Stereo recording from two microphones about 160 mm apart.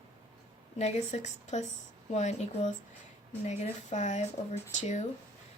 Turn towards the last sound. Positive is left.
turn(degrees=45)  # may be behind; listen again after turning